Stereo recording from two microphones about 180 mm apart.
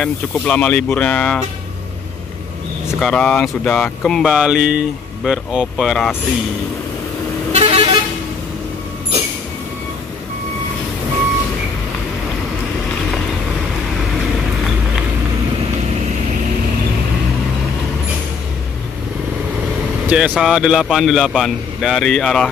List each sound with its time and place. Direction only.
0.0 s speech: 5° left (ahead or behind)
3.0 s speech: 5° left (ahead or behind)
7.5 s vehicle: 35° right (ahead or behind)
20.1 s speech: 5° right (ahead or behind)